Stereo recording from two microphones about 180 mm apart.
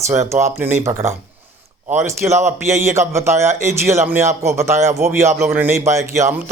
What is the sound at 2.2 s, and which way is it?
Speech, 5° right (ahead or behind).